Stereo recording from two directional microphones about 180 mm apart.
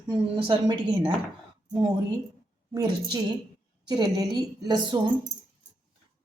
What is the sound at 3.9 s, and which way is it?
A woman's voice, 20° right (ahead or behind).